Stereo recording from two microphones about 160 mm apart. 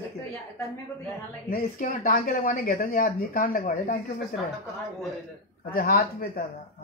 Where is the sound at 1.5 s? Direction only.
60° left (ahead or behind).